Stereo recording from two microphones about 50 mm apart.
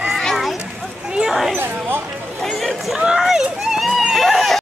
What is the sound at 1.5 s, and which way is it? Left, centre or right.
Speech, right.